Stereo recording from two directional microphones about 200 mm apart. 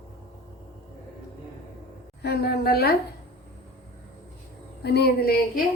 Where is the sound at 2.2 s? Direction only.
55° left (ahead or behind).